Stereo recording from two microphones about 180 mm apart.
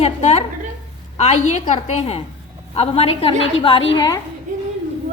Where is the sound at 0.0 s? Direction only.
35° left (ahead or behind).